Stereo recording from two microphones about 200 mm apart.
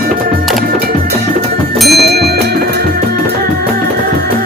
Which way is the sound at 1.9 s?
55° right (ahead or behind).